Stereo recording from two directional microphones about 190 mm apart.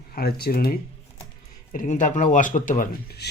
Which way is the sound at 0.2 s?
55° left (ahead or behind).